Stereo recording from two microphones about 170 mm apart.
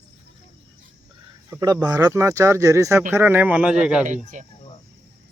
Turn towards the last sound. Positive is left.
turn(degrees=-45)  # may be behind; listen again after turning